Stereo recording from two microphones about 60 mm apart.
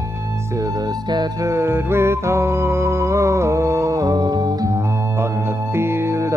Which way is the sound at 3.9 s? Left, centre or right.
Right.